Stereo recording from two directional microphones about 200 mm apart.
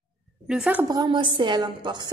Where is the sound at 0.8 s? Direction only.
20° right (ahead or behind).